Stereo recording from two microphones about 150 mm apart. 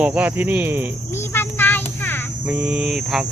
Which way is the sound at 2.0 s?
15° left (ahead or behind).